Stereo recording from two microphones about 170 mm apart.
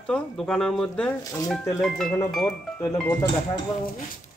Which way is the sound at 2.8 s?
20° left (ahead or behind).